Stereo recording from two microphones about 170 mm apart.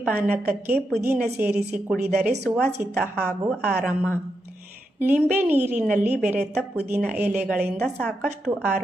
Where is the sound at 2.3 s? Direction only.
80° right.